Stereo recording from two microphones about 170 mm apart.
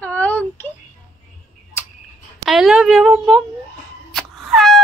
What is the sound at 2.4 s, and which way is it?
A woman's voice, centre (ahead or behind).